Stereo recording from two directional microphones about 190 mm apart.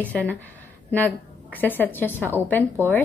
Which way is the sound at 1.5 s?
10° left (ahead or behind).